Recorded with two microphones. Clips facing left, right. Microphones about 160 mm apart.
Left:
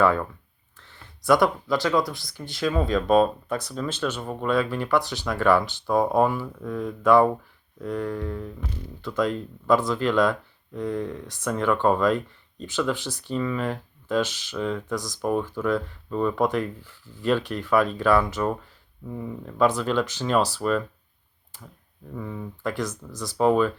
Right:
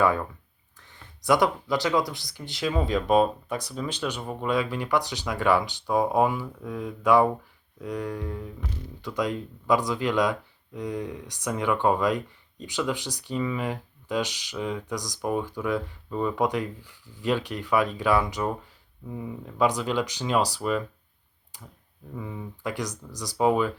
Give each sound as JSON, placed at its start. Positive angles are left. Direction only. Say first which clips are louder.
{"t": 0.0, "sound": "speech", "louder": "left 2 dB", "side_deg": -15}
{"t": 21.5, "sound": "clicking", "louder": "left 2 dB", "side_deg": -15}
{"t": 22.2, "sound": "speech", "louder": "left 3 dB", "side_deg": -15}